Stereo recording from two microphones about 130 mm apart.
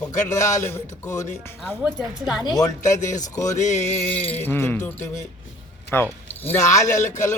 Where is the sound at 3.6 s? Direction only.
65° left (ahead or behind).